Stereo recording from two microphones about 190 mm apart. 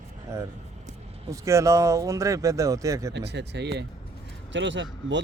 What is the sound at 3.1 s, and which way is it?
Speech, 65° right (ahead or behind).